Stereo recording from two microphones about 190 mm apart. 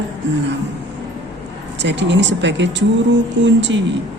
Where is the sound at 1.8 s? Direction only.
70° right (ahead or behind).